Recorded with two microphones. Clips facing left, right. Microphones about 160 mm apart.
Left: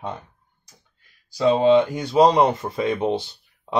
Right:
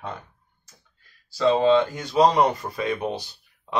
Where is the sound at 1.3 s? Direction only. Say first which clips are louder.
Left 2 dB; 15° left (ahead or behind).